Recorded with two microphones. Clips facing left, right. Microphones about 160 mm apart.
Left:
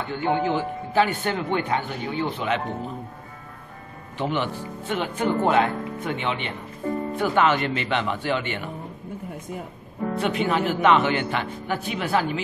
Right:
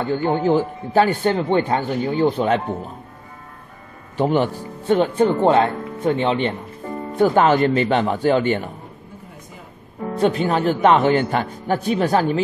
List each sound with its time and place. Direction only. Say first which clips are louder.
0.0 s speech: right 5 dB; 40° right (ahead or behind)
4.2 s speech: right 7 dB; 40° right (ahead or behind)
10.1 s speech: right 5 dB; 35° right (ahead or behind)